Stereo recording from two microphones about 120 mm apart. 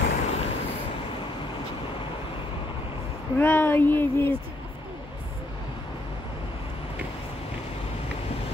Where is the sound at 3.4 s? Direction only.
15° left (ahead or behind).